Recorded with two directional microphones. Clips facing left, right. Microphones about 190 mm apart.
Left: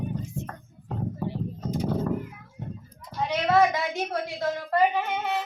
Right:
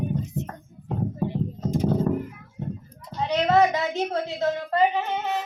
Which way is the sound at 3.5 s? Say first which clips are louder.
Right 1 dB; 20° right (ahead or behind).